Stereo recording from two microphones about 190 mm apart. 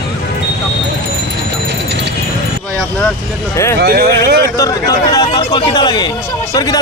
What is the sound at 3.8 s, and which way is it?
Speech, 55° right (ahead or behind).